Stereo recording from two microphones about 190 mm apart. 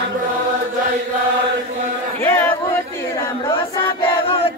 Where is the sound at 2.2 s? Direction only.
10° left (ahead or behind).